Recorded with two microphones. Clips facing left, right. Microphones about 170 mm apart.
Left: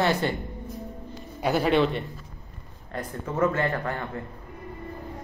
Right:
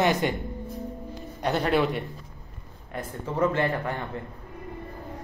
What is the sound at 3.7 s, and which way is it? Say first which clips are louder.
Speech: even; 15° right (ahead or behind).